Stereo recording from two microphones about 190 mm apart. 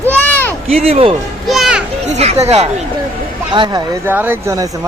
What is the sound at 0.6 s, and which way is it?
Speech, 30° right (ahead or behind).